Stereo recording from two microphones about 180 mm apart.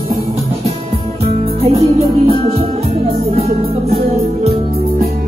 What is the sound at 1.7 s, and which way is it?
Music, 30° right (ahead or behind).